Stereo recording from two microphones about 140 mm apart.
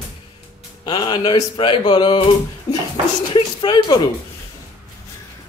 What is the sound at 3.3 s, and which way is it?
Speech, 35° left (ahead or behind).